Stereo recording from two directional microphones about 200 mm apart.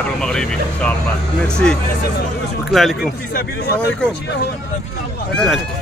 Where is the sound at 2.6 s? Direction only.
Centre (ahead or behind).